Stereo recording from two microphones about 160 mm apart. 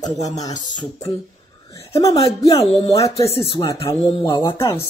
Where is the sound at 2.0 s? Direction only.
20° left (ahead or behind).